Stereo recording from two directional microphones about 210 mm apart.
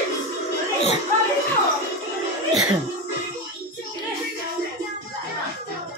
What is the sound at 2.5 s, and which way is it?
Music, centre (ahead or behind).